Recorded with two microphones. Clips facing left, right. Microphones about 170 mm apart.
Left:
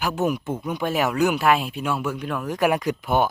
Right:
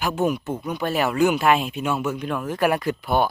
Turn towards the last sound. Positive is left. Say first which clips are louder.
# even
turn(degrees=15)  # may be behind; listen again after turning